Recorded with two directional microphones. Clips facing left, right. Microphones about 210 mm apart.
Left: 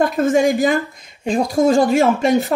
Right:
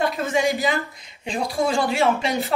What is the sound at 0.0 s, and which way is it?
Speech, 50° left (ahead or behind).